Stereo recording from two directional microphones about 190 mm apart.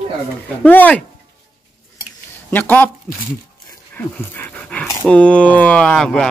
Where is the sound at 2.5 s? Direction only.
10° left (ahead or behind).